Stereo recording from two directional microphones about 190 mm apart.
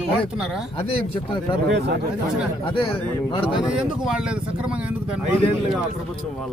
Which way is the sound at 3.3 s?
25° left (ahead or behind).